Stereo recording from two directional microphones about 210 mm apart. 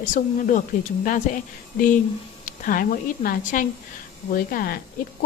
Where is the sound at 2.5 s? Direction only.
40° left (ahead or behind).